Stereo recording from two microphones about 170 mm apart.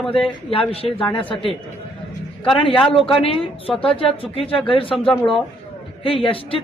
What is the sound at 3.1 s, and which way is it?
Speech, 30° left (ahead or behind).